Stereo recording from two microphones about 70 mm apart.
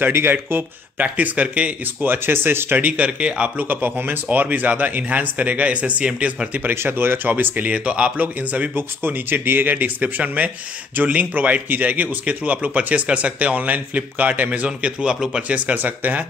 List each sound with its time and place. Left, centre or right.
0.0 s speech: right
2.0 s speech: right
6.7 s speech: right